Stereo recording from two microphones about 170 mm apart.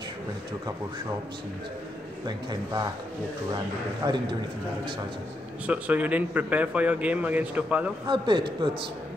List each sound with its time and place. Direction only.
2.2 s a man's voice: 25° right (ahead or behind)
4.0 s a man's voice: 25° right (ahead or behind)
5.7 s a man's voice: 10° right (ahead or behind)
8.1 s a man's voice: 30° right (ahead or behind)